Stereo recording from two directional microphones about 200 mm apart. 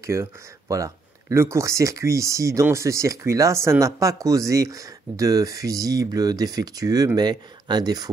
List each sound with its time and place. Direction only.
0.0 s speech: 15° right (ahead or behind)